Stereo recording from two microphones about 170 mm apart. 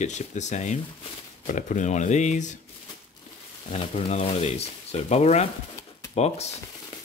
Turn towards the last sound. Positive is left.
turn(degrees=40)  # may be behind; listen again after turning